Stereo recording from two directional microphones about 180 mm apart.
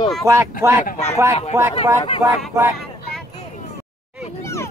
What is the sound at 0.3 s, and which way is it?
Speech, 15° right (ahead or behind).